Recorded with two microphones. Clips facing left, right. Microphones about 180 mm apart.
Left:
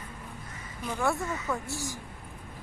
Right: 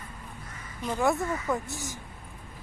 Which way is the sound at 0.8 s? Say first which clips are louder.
Right 3 dB; 15° right (ahead or behind).